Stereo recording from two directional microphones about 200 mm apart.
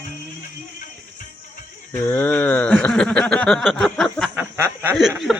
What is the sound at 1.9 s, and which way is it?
Speech, 10° left (ahead or behind).